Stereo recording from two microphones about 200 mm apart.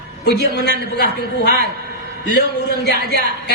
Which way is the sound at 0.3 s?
55° left (ahead or behind).